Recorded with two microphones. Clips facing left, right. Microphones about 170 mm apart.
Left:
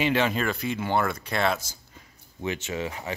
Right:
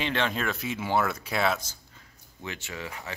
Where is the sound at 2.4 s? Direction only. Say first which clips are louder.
Left 8 dB; 20° left (ahead or behind).